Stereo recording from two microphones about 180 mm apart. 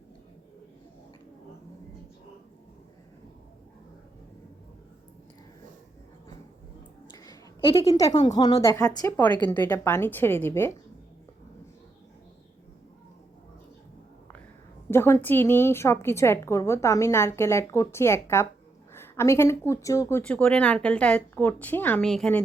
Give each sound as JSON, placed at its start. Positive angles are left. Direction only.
{"t": 7.3, "sound": "a sound", "side_deg": 30}
{"t": 7.9, "sound": "a woman's voice", "side_deg": 20}
{"t": 14.8, "sound": "a woman's voice", "side_deg": 15}